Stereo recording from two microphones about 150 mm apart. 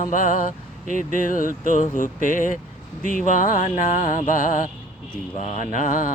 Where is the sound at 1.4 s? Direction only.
55° right (ahead or behind).